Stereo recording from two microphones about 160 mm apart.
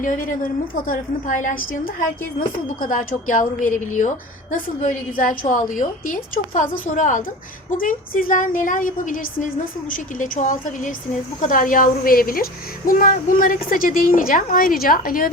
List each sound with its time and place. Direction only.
0.0 s a woman's voice: 55° left (ahead or behind)